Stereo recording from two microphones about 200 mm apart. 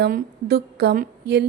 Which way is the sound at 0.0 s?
50° right (ahead or behind).